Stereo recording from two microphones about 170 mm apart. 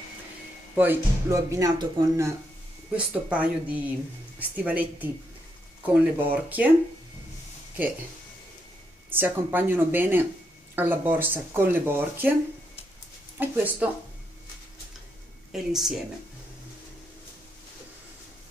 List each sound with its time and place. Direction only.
0.7 s speech: 15° right (ahead or behind)
3.1 s speech: 10° right (ahead or behind)
9.1 s speech: 10° right (ahead or behind)
13.4 s speech: 10° right (ahead or behind)
15.5 s a woman's voice: centre (ahead or behind)